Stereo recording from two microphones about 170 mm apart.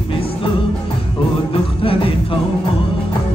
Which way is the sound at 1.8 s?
30° left (ahead or behind).